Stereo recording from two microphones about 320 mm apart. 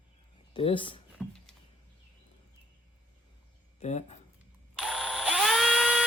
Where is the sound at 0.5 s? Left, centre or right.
Centre.